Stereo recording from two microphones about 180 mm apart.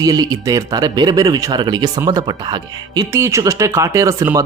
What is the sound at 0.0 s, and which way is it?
Speech, 20° right (ahead or behind).